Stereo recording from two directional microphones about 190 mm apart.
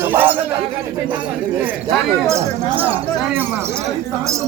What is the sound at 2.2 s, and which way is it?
A man's voice, 15° right (ahead or behind).